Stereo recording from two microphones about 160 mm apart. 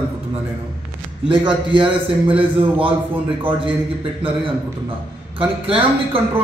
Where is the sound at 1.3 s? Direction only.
30° right (ahead or behind).